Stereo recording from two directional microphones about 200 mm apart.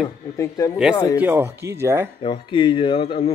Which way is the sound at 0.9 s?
15° left (ahead or behind).